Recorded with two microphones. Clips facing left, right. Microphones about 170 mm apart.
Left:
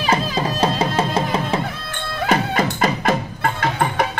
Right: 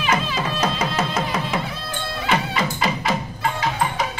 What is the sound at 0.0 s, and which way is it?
Music, 40° left (ahead or behind).